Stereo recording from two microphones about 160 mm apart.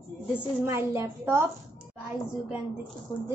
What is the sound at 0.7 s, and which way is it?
Speech, 15° right (ahead or behind).